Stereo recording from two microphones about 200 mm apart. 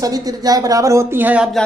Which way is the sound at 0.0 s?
20° right (ahead or behind).